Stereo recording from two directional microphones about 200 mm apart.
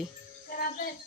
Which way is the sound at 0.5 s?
45° left (ahead or behind).